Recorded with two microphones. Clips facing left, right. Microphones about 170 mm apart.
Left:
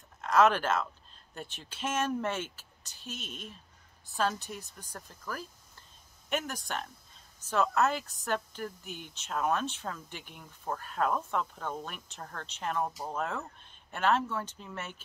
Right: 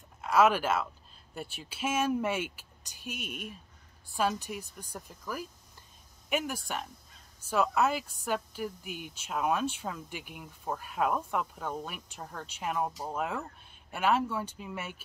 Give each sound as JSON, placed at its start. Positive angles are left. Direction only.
{"t": 0.2, "sound": "speech", "side_deg": -10}